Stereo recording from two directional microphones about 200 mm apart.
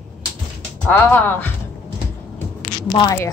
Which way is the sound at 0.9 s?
10° left (ahead or behind).